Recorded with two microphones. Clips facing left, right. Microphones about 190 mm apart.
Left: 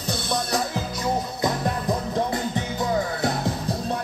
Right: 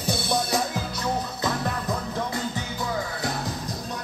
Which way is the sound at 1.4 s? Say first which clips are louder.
Left 3 dB; 20° left (ahead or behind).